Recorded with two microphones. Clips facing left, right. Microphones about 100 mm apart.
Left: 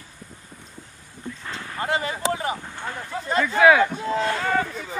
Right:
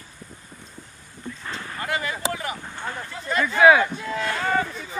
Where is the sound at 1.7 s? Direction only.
30° left (ahead or behind).